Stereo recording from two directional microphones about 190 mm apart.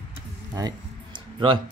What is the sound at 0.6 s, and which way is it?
Music, 25° right (ahead or behind).